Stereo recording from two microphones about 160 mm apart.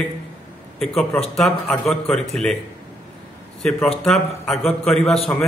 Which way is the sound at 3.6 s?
5° left (ahead or behind).